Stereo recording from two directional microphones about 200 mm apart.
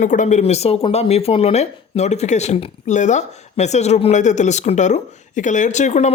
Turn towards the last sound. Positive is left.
turn(degrees=35)  # may be behind; listen again after turning